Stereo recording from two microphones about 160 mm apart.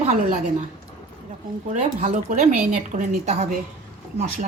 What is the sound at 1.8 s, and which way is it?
A woman's voice, 45° right (ahead or behind).